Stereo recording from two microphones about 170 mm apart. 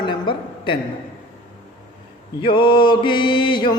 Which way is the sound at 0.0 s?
30° left (ahead or behind).